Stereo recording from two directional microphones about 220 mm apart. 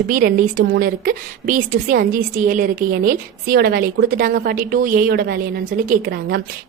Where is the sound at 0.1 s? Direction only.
40° right (ahead or behind).